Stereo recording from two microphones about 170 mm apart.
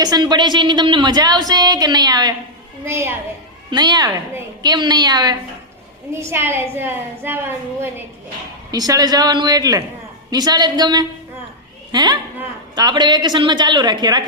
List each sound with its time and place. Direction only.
0.0 s a woman's voice: 25° right (ahead or behind)
3.7 s a woman's voice: 25° right (ahead or behind)